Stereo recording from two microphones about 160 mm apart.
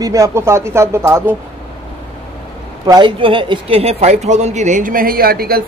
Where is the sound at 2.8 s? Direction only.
25° right (ahead or behind); by 5.6 s 70° right (ahead or behind).